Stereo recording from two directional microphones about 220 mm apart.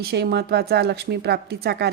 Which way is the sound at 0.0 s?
45° right (ahead or behind).